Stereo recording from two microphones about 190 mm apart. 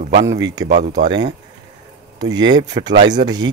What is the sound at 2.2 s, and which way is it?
Speech, 20° right (ahead or behind).